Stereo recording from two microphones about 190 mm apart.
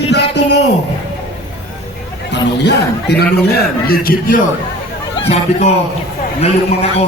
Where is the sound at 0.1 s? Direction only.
60° left (ahead or behind).